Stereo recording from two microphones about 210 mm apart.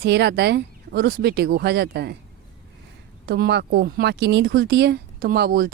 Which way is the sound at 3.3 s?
50° right (ahead or behind).